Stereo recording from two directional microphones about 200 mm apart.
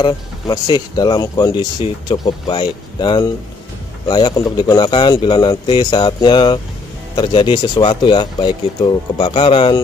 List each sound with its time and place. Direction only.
0.0 s speech: 20° left (ahead or behind)